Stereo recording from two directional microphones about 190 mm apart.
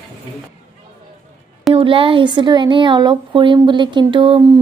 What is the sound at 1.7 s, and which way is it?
Speech, 30° right (ahead or behind).